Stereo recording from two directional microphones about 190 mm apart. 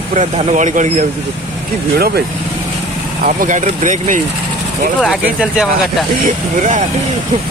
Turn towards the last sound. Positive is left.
turn(degrees=-40)  # may be behind; listen again after turning